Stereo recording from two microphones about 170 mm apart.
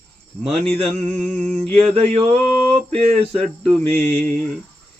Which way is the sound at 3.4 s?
5° left (ahead or behind).